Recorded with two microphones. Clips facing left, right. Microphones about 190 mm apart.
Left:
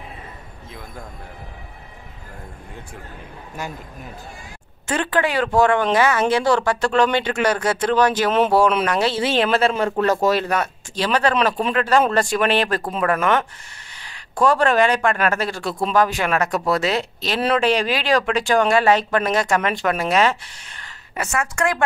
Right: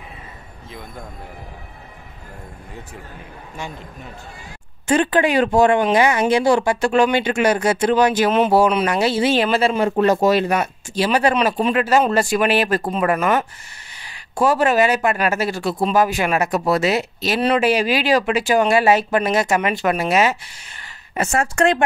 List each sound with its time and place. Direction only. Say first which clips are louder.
3.5 s a man's voice: left 1 dB; 5° left (ahead or behind)
4.8 s speech: right 4 dB; 15° right (ahead or behind)
9.8 s a man's voice: right 3 dB; 15° right (ahead or behind)
21.2 s a woman's voice: right 4 dB; 30° right (ahead or behind)